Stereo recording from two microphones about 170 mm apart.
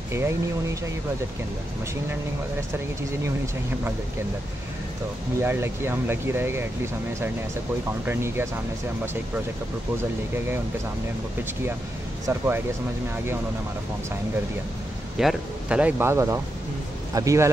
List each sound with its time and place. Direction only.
0.1 s speech: 15° right (ahead or behind)
5.4 s speech: 15° right (ahead or behind)
8.0 s speech: 15° right (ahead or behind)
12.3 s speech: 10° right (ahead or behind)
15.1 s speech: 5° right (ahead or behind)